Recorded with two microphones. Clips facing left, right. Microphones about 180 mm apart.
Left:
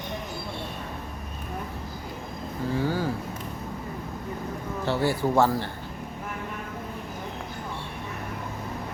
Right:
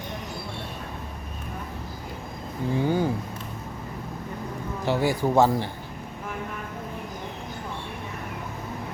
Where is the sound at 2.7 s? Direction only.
20° right (ahead or behind).